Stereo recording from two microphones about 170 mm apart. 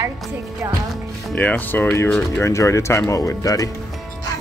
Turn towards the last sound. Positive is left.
turn(degrees=20)  # may be behind; listen again after turning